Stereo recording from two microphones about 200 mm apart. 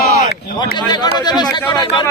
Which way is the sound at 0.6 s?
20° left (ahead or behind).